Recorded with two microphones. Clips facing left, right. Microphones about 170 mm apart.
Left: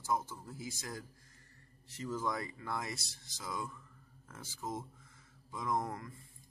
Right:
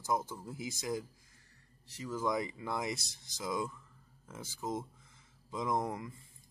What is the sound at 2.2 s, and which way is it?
Speech, 15° right (ahead or behind).